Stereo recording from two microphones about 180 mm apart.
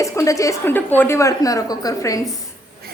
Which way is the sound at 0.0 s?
15° left (ahead or behind).